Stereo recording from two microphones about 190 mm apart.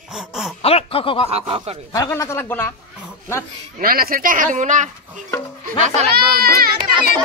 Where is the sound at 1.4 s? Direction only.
30° right (ahead or behind).